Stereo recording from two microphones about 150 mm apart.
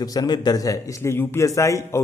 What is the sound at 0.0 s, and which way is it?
A man's voice, 25° left (ahead or behind).